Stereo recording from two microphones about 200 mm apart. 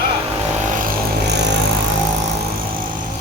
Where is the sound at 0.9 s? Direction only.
55° right (ahead or behind).